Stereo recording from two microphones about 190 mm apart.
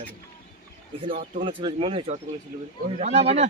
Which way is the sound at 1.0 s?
25° right (ahead or behind).